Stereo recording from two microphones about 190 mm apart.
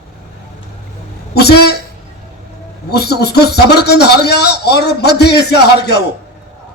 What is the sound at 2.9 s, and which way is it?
Speech, 60° left (ahead or behind).